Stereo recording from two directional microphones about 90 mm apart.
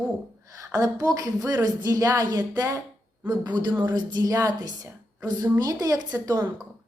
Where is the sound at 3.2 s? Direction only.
55° right (ahead or behind).